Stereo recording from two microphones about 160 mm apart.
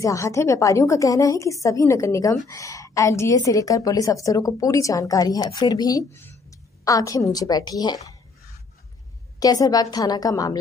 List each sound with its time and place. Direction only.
0.0 s a woman's voice: 20° left (ahead or behind)
9.4 s a woman's voice: 25° left (ahead or behind)